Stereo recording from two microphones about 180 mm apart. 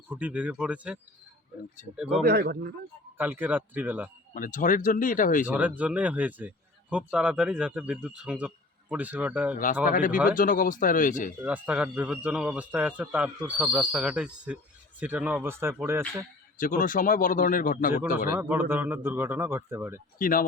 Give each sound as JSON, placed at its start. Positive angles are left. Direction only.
{"t": 0.1, "sound": "a man's voice", "side_deg": -10}
{"t": 2.2, "sound": "speech", "side_deg": -70}
{"t": 3.2, "sound": "a man's voice", "side_deg": -10}
{"t": 4.4, "sound": "a man's voice", "side_deg": 50}
{"t": 5.5, "sound": "a man's voice", "side_deg": -10}
{"t": 9.8, "sound": "a man's voice", "side_deg": 50}
{"t": 11.4, "sound": "a man's voice", "side_deg": -5}
{"t": 16.6, "sound": "a man's voice", "side_deg": 50}
{"t": 18.3, "sound": "a man's voice", "side_deg": -10}
{"t": 20.1, "sound": "a man's voice", "side_deg": 50}